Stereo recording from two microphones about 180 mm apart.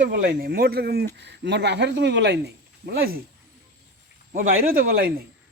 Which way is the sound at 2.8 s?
60° right (ahead or behind).